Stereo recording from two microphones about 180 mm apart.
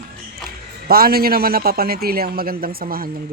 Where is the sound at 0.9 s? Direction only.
55° right (ahead or behind).